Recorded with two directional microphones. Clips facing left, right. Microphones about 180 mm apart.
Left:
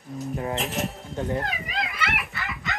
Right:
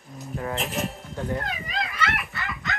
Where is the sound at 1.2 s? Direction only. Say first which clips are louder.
Left 2 dB; 25° left (ahead or behind).